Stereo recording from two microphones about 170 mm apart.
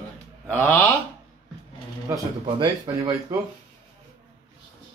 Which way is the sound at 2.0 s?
20° right (ahead or behind).